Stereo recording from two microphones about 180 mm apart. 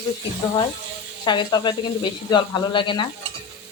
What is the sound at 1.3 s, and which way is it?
Speech, 25° left (ahead or behind).